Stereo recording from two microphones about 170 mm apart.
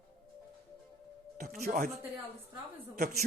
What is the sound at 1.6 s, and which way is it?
Speech, 55° right (ahead or behind).